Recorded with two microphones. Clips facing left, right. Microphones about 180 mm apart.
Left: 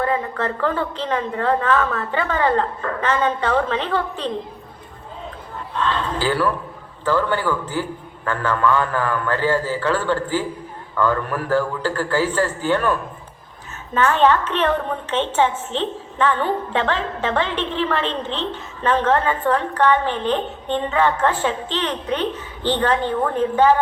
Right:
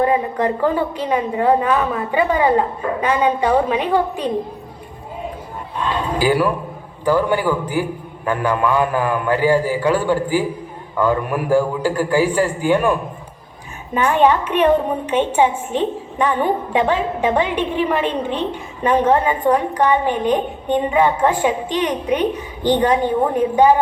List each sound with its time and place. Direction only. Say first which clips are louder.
0.0 s a woman's voice: right 5 dB; 15° right (ahead or behind)
5.7 s a woman's voice: right 1 dB; 15° right (ahead or behind)